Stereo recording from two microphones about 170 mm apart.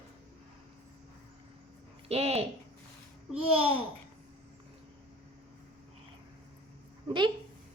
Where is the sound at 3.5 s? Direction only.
35° right (ahead or behind).